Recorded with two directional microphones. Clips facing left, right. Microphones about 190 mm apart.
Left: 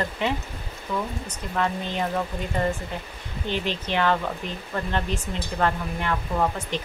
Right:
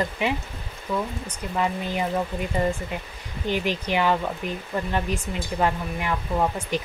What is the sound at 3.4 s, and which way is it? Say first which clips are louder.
Speech: right 3 dB; 10° right (ahead or behind).